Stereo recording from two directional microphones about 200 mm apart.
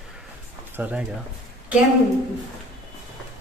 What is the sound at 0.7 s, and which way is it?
Speech, 5° right (ahead or behind).